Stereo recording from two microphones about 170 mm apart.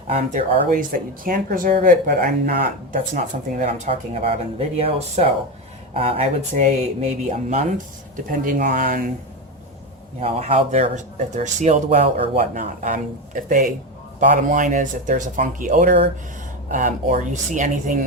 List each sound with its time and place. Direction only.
0.1 s speech: 45° right (ahead or behind)
3.6 s speech: 40° right (ahead or behind); by 9.0 s 55° right (ahead or behind)
10.2 s speech: 40° right (ahead or behind)
12.4 s speech: 50° right (ahead or behind)